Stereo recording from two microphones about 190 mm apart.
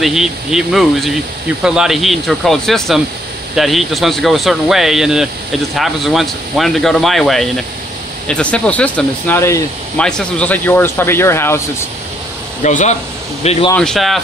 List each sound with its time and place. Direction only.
0.0 s speech: centre (ahead or behind); by 11.6 s 15° left (ahead or behind)
12.6 s speech: 40° left (ahead or behind)
13.7 s speech: centre (ahead or behind)